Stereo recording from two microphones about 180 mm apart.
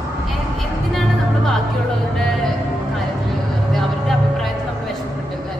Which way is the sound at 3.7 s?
Centre (ahead or behind).